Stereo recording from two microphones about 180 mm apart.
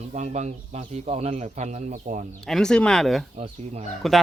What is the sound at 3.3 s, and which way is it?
Speech, 35° right (ahead or behind).